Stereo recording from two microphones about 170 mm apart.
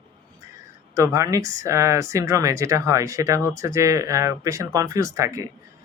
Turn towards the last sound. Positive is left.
turn(degrees=-20)  # may be behind; listen again after turning